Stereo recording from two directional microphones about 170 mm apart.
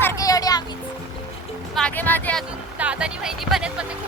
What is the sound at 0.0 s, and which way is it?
Music, 20° left (ahead or behind).